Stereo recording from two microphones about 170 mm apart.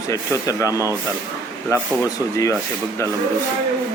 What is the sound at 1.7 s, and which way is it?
Speech, 20° left (ahead or behind).